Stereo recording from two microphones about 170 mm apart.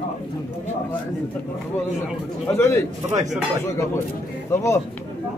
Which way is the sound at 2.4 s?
15° left (ahead or behind).